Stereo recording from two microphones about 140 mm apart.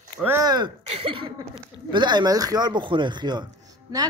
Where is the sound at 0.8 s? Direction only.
40° right (ahead or behind).